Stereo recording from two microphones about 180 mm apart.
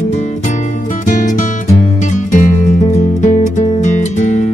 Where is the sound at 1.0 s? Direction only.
45° left (ahead or behind).